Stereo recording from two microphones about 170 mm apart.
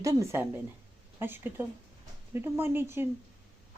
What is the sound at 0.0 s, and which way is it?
Speech, 20° right (ahead or behind).